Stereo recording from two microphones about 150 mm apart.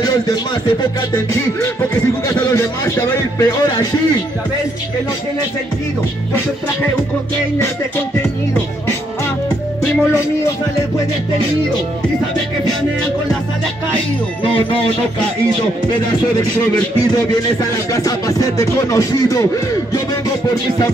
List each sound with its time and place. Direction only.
0.0 s speech: 25° left (ahead or behind)
2.2 s a sound: 20° left (ahead or behind)
3.3 s music: 25° left (ahead or behind)
14.4 s speech: 35° left (ahead or behind)
17.9 s music: 20° left (ahead or behind)